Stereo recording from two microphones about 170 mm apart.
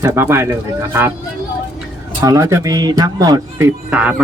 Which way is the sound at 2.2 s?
20° right (ahead or behind).